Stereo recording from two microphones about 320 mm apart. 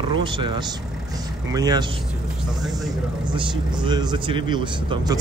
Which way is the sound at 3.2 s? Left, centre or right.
Centre.